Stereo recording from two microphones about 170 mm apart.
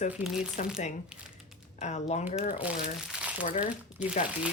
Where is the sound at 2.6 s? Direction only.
5° right (ahead or behind).